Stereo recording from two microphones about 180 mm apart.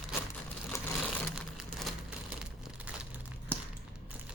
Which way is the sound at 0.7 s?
15° left (ahead or behind).